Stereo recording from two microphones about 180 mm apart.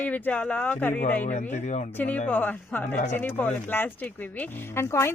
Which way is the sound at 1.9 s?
10° left (ahead or behind).